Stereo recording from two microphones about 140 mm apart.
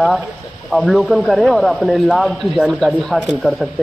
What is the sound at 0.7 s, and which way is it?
Speech, centre (ahead or behind).